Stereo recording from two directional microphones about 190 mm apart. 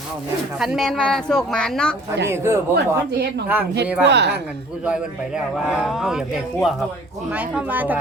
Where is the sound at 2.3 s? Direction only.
15° right (ahead or behind).